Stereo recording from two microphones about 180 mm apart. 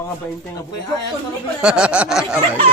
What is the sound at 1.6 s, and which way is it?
Speech, 5° right (ahead or behind).